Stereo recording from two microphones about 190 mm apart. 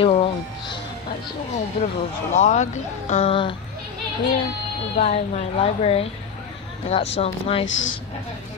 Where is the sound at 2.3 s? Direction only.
40° left (ahead or behind).